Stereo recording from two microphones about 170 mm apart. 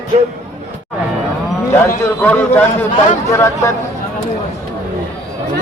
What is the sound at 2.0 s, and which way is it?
Speech, 10° left (ahead or behind).